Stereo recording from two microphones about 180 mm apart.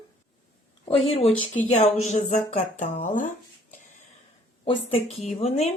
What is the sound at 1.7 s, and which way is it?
Speech, 40° left (ahead or behind).